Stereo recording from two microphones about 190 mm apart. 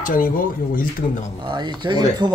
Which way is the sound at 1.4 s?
25° right (ahead or behind).